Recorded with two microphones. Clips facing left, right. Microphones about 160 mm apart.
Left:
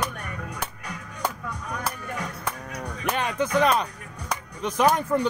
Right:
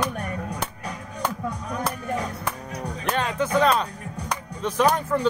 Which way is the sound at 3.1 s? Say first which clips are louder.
Right 1 dB; 15° left (ahead or behind).